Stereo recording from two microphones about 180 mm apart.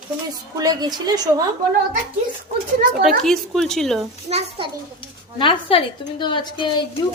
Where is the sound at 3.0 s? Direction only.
Centre (ahead or behind).